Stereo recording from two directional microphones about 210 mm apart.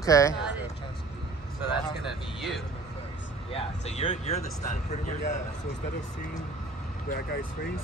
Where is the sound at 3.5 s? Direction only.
30° left (ahead or behind).